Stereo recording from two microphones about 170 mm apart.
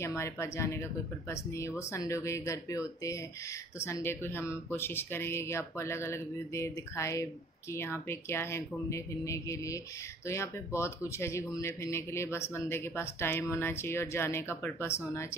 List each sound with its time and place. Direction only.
0.0 s speech: 15° left (ahead or behind)
3.8 s speech: 15° left (ahead or behind)